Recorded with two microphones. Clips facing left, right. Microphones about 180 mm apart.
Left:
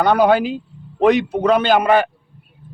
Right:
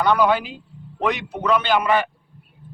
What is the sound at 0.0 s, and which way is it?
A man's voice, 45° left (ahead or behind).